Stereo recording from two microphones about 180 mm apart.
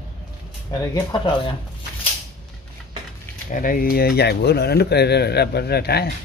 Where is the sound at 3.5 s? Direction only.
50° left (ahead or behind).